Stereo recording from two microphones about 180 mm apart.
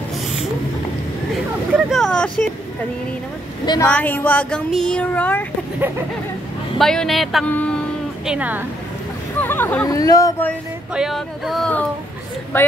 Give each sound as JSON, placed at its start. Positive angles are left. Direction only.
{"t": 1.7, "sound": "speech", "side_deg": 0}
{"t": 3.8, "sound": "speech", "side_deg": 10}
{"t": 6.8, "sound": "speech", "side_deg": 0}
{"t": 8.3, "sound": "speech", "side_deg": -10}
{"t": 9.4, "sound": "speech", "side_deg": 10}
{"t": 10.9, "sound": "speech", "side_deg": 0}